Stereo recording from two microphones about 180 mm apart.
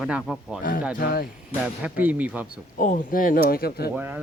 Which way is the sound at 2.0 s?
10° right (ahead or behind).